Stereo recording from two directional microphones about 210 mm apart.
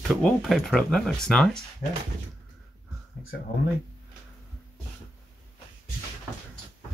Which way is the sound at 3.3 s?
50° left (ahead or behind).